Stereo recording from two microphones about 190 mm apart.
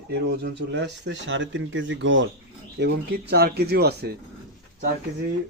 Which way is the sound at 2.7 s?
60° right (ahead or behind).